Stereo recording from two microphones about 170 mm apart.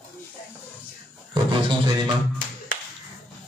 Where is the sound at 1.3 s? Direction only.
25° right (ahead or behind).